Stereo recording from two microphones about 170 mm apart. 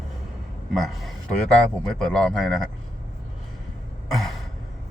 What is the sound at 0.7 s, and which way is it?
Speech, centre (ahead or behind).